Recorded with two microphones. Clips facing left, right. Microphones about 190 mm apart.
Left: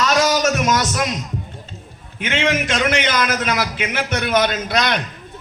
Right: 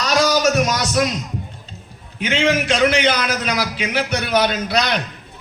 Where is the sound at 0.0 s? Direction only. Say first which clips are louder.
Even; 45° left (ahead or behind).